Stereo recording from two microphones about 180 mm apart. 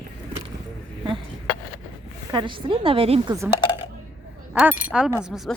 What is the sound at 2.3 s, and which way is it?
A woman's voice, 25° right (ahead or behind).